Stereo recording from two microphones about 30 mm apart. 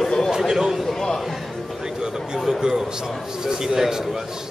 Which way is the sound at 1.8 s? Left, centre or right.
Right.